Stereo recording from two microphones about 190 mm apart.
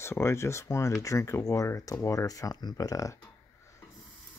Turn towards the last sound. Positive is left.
turn(degrees=15)  # may be behind; listen again after turning